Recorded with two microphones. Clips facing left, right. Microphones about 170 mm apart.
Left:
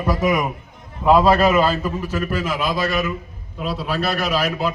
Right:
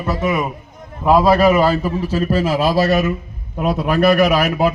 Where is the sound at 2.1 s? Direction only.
35° right (ahead or behind).